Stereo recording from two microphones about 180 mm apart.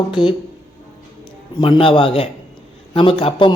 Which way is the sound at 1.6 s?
30° left (ahead or behind).